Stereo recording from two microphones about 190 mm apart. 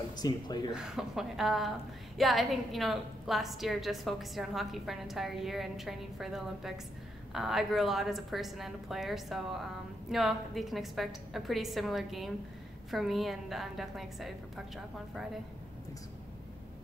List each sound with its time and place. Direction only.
0.1 s speech: 20° left (ahead or behind)
0.7 s a woman's voice: centre (ahead or behind)